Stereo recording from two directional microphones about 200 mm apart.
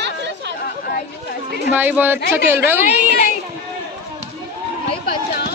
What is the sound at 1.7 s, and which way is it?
Speech, 10° right (ahead or behind).